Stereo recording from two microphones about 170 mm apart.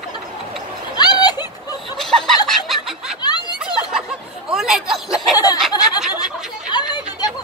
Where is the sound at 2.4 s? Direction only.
Centre (ahead or behind).